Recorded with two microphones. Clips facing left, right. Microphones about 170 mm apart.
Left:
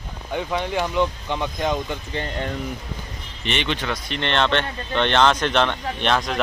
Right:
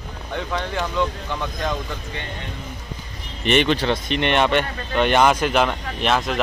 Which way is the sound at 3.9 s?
20° right (ahead or behind).